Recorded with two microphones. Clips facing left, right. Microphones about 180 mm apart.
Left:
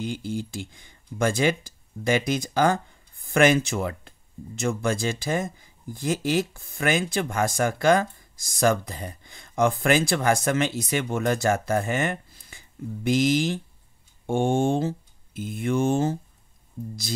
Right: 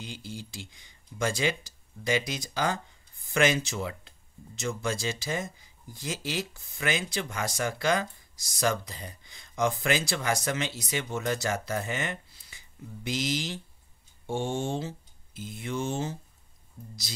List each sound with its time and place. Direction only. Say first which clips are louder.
0.0 s speech: left 11 dB; 50° left (ahead or behind)